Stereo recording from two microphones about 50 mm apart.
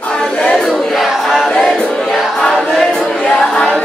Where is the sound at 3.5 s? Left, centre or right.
Centre.